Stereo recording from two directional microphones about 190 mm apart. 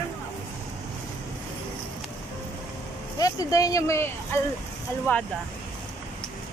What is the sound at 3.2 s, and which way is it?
Speech, 20° left (ahead or behind).